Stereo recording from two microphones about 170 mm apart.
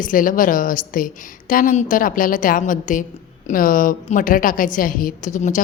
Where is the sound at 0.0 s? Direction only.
50° left (ahead or behind).